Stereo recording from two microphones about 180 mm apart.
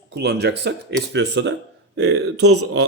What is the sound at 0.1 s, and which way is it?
Speech, 65° right (ahead or behind).